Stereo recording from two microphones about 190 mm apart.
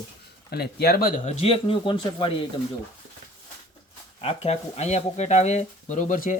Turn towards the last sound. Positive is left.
turn(degrees=45)  # may be behind; listen again after turning